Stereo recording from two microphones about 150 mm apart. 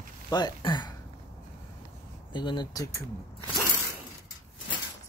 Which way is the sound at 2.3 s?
30° left (ahead or behind).